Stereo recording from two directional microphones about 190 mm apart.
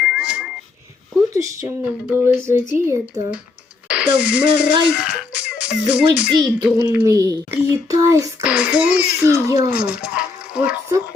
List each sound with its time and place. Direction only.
0.0 s a sound: 5° right (ahead or behind)
1.3 s a child's voice: 15° right (ahead or behind)
6.4 s a child's voice: 15° right (ahead or behind)
8.4 s a child's voice: 5° right (ahead or behind)